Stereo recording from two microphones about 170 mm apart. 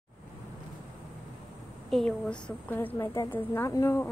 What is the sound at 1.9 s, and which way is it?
A woman's voice, 5° left (ahead or behind).